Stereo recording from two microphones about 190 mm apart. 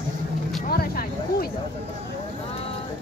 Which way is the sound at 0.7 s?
50° left (ahead or behind).